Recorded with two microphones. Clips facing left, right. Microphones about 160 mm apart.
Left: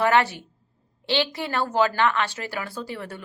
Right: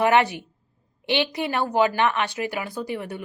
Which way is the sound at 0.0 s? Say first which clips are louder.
Right 1 dB; 15° right (ahead or behind).